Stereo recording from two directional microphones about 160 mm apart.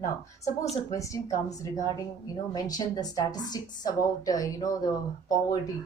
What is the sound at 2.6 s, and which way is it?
A woman's voice, 25° left (ahead or behind).